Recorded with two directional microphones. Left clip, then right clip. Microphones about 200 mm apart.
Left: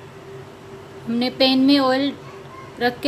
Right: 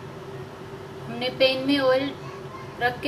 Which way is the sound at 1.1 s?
50° left (ahead or behind).